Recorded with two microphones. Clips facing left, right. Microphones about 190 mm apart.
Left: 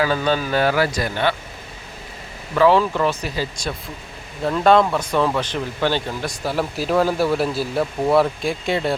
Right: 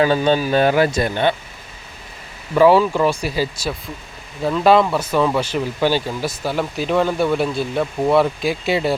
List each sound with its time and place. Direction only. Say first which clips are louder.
0.0 s speech: right 4 dB; 25° right (ahead or behind)
2.6 s speech: right 3 dB; 15° right (ahead or behind)